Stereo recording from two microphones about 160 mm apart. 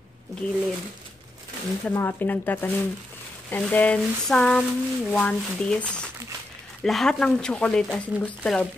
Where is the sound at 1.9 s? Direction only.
15° left (ahead or behind).